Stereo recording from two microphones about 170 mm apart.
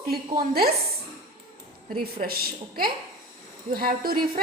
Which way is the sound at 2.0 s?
60° right (ahead or behind).